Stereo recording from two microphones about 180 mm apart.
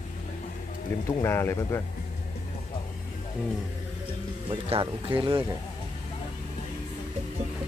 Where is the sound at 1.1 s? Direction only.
15° left (ahead or behind).